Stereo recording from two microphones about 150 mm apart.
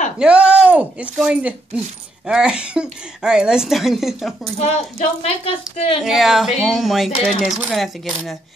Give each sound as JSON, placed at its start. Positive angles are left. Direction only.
{"t": 0.2, "sound": "speech", "side_deg": -5}
{"t": 4.6, "sound": "speech", "side_deg": 50}
{"t": 6.0, "sound": "speech", "side_deg": 0}